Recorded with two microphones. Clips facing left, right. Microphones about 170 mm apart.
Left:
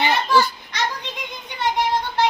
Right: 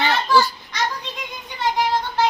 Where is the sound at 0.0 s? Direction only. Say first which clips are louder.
Even; 15° left (ahead or behind).